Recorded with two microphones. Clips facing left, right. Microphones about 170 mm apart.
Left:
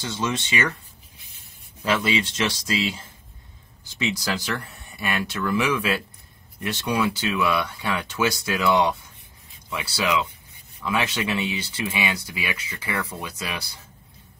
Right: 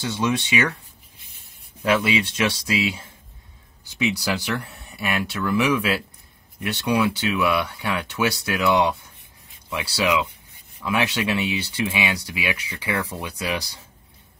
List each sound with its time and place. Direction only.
0.1 s speech: 15° right (ahead or behind)
2.0 s speech: 5° right (ahead or behind)
4.0 s speech: 10° right (ahead or behind)